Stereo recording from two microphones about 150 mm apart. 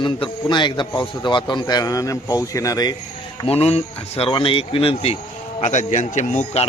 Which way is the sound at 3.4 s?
40° left (ahead or behind).